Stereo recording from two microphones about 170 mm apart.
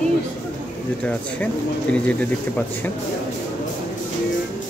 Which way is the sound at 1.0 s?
5° left (ahead or behind).